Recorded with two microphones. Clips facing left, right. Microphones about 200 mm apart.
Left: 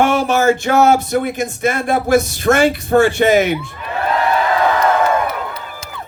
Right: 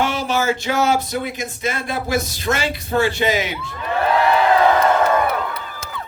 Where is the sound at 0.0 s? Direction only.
50° left (ahead or behind).